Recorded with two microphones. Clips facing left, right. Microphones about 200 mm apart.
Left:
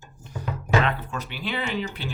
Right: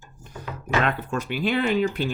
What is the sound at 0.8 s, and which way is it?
Speech, 45° right (ahead or behind).